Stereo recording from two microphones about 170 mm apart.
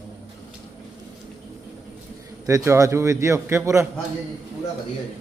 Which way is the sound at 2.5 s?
20° right (ahead or behind).